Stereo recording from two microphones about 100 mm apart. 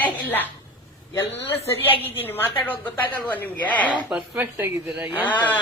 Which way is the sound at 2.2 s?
20° left (ahead or behind).